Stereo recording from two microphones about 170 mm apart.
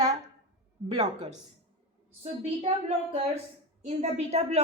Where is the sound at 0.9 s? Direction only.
40° right (ahead or behind).